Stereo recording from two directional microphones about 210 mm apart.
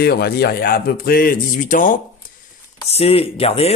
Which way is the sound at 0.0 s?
50° left (ahead or behind).